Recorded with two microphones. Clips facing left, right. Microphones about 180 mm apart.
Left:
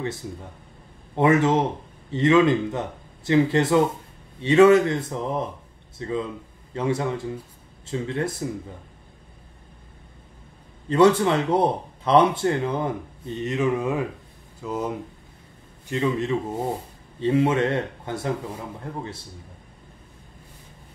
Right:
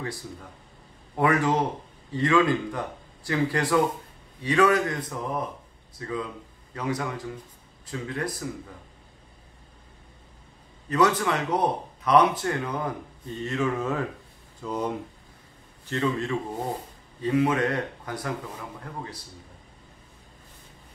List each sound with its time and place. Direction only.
0.0 s speech: 25° left (ahead or behind)
10.9 s speech: 30° left (ahead or behind); by 15.0 s 5° left (ahead or behind)
15.9 s speech: 20° left (ahead or behind)